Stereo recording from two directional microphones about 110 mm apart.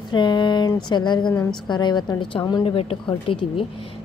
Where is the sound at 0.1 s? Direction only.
45° left (ahead or behind).